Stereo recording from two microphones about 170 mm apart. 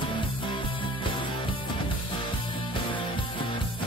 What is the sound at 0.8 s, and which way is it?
Music, 30° left (ahead or behind).